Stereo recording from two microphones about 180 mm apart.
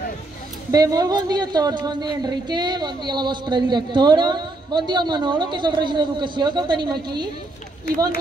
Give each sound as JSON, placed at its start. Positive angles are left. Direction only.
{"t": 0.7, "sound": "speech", "side_deg": -20}